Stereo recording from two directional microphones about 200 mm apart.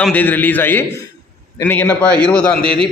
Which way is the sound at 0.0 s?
10° left (ahead or behind).